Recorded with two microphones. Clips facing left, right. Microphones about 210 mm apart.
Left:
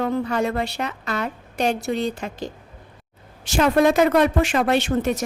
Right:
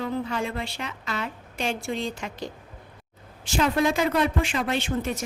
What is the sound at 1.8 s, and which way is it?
Speech, 65° left (ahead or behind).